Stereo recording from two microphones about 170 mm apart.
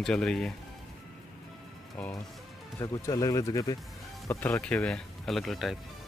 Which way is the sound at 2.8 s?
20° left (ahead or behind).